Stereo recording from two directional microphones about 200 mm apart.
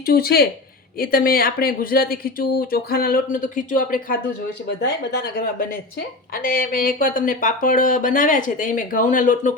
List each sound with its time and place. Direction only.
0.0 s a woman's voice: 50° left (ahead or behind)